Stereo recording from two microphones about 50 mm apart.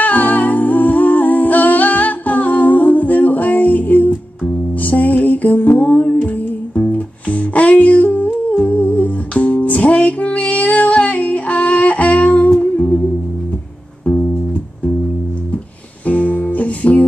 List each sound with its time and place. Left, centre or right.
0.0 s humming: left
4.8 s music: left
16.1 s music: left